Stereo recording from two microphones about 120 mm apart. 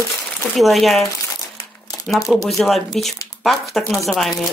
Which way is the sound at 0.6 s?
Centre (ahead or behind).